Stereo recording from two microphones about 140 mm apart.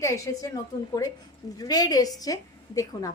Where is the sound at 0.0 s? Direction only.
25° left (ahead or behind).